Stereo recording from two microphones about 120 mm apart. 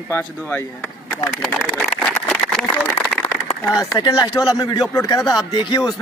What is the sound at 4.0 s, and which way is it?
Speech, 35° left (ahead or behind).